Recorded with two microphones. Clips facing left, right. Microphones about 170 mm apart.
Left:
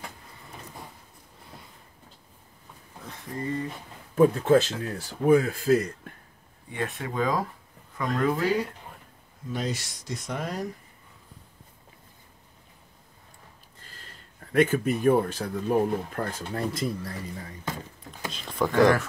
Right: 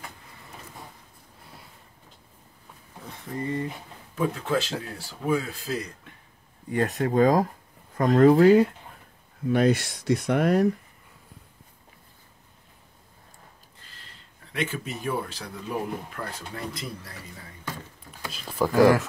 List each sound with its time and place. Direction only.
4.1 s speech: 45° left (ahead or behind)
6.7 s speech: 40° right (ahead or behind); by 10.7 s 65° right (ahead or behind)
13.8 s speech: 50° left (ahead or behind)
18.3 s speech: 5° right (ahead or behind)